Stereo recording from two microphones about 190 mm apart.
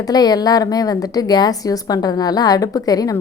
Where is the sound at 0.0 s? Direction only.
20° left (ahead or behind).